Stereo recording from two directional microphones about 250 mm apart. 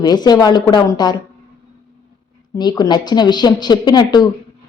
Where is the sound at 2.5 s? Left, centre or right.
Centre.